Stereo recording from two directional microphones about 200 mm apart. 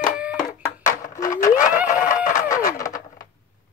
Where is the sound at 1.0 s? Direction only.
15° left (ahead or behind).